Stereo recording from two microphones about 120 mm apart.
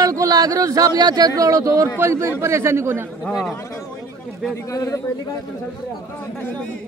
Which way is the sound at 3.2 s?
5° left (ahead or behind).